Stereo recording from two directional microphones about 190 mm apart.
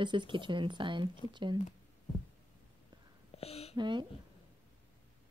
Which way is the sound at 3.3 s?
30° left (ahead or behind).